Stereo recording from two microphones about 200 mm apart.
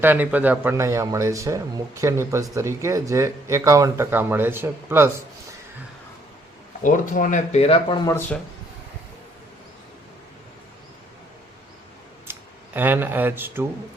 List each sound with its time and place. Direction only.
0.0 s speech: 10° right (ahead or behind)
6.8 s speech: 40° left (ahead or behind); by 8.2 s 20° left (ahead or behind)
12.3 s speech: 10° right (ahead or behind)